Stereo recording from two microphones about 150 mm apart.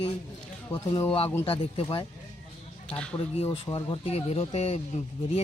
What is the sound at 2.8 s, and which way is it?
Speech, 10° left (ahead or behind).